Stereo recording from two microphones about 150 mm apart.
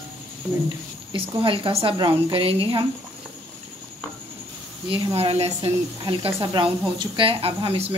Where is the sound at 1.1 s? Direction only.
35° right (ahead or behind).